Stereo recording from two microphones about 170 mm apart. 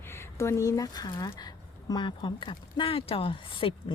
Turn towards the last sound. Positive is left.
turn(degrees=30)  # may be behind; listen again after turning